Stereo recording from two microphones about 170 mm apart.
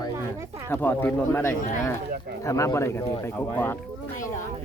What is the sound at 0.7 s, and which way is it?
Speech, 10° left (ahead or behind).